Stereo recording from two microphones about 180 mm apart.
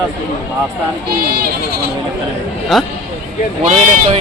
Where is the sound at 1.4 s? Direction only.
60° right (ahead or behind).